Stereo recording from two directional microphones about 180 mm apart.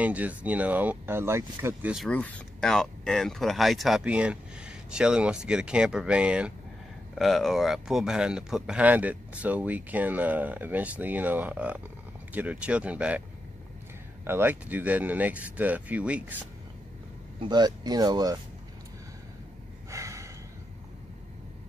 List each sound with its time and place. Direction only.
0.0 s speech: 10° right (ahead or behind)
2.0 s speech: 5° left (ahead or behind)
14.2 s speech: 10° right (ahead or behind)
17.4 s speech: 25° right (ahead or behind)
19.9 s snort: 15° right (ahead or behind)